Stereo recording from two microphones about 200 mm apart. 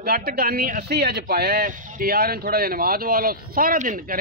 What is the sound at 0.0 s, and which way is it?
Speech, 50° right (ahead or behind).